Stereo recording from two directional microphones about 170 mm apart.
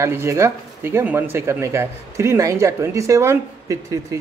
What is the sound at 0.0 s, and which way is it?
Speech, 15° right (ahead or behind).